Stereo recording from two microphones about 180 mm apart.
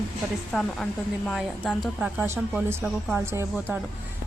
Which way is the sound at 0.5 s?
5° left (ahead or behind).